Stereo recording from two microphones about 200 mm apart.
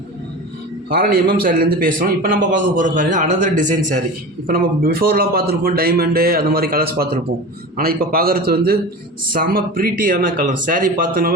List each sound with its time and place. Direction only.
0.9 s a man's voice: 45° right (ahead or behind)